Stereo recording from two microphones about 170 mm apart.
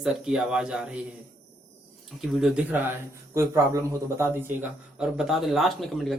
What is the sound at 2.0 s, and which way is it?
A man's voice, centre (ahead or behind).